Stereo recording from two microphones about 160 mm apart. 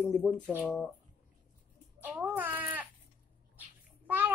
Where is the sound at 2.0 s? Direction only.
10° right (ahead or behind).